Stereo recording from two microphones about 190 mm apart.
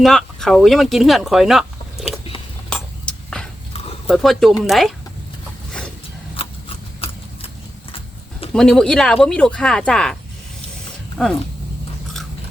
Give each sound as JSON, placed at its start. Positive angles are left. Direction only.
{"t": 0.0, "sound": "speech", "side_deg": 0}
{"t": 2.0, "sound": "a sound", "side_deg": 30}
{"t": 2.6, "sound": "vehicle", "side_deg": 5}
{"t": 4.0, "sound": "speech", "side_deg": 0}
{"t": 6.4, "sound": "scissors", "side_deg": 30}
{"t": 8.5, "sound": "speech", "side_deg": 5}
{"t": 11.2, "sound": "speech", "side_deg": 0}